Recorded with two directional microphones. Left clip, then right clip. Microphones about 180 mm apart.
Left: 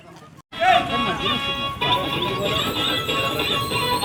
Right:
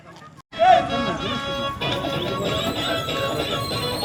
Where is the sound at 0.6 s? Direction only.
55° right (ahead or behind).